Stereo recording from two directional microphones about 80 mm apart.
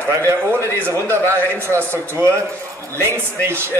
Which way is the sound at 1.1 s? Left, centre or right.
Right.